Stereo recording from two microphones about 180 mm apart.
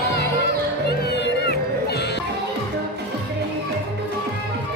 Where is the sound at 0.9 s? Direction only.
70° left (ahead or behind).